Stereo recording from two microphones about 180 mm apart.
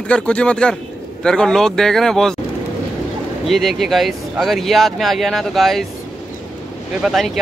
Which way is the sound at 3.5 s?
Centre (ahead or behind).